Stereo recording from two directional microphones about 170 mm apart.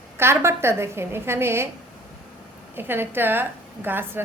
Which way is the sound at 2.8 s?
10° right (ahead or behind).